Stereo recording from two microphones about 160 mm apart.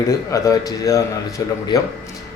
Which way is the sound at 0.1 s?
20° left (ahead or behind).